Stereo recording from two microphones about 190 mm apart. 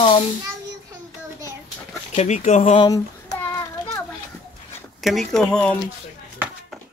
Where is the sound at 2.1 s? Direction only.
35° left (ahead or behind).